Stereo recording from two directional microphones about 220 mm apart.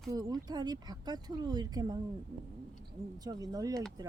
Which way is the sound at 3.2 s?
15° right (ahead or behind).